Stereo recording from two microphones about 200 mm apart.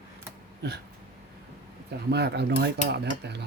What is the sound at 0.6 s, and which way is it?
Speech, 55° right (ahead or behind).